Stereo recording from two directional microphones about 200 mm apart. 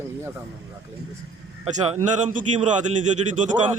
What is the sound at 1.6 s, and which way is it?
Speech, 35° right (ahead or behind).